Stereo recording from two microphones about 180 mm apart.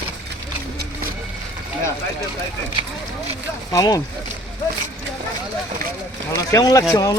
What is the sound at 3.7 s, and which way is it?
Speech, 20° left (ahead or behind).